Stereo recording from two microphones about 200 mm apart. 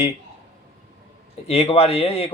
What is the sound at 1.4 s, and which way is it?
Speech, 30° left (ahead or behind).